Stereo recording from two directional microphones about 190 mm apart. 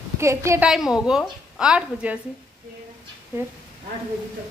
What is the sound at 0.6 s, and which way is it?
A woman's voice, centre (ahead or behind).